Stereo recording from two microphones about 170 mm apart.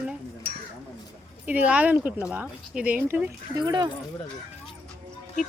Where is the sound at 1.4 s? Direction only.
10° right (ahead or behind).